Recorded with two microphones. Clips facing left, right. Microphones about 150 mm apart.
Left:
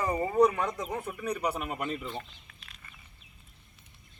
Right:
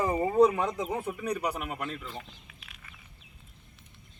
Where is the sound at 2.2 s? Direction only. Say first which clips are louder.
Left 1 dB; 5° right (ahead or behind).